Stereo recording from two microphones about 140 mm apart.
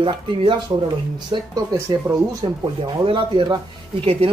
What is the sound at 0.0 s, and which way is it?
Speech, 40° right (ahead or behind).